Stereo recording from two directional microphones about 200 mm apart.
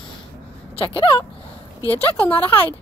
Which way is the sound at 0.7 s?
25° left (ahead or behind).